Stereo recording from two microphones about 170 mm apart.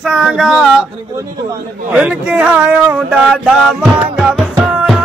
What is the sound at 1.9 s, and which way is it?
Speech, 10° right (ahead or behind).